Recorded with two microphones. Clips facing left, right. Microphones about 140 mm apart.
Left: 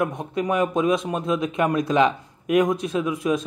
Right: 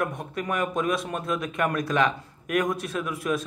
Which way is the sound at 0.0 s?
20° left (ahead or behind).